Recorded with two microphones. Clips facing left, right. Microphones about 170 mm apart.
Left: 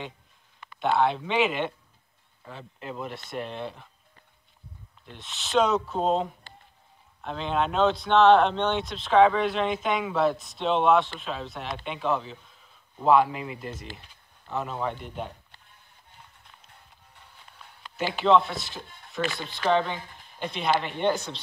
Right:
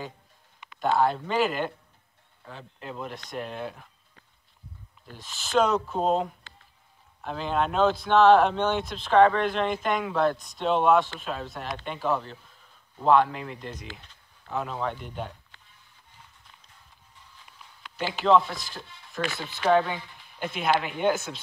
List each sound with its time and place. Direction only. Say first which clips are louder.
0.7 s speech: even; centre (ahead or behind)
5.0 s speech: even; centre (ahead or behind)
18.2 s speech: even; centre (ahead or behind)
18.8 s speech: left 1 dB; 50° left (ahead or behind)
19.5 s speech: right 3 dB; 5° right (ahead or behind)